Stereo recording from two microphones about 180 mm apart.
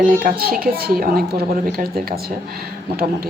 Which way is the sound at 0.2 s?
55° right (ahead or behind).